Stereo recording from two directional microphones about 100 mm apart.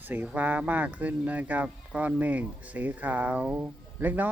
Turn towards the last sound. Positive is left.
turn(degrees=-20)  # may be behind; listen again after turning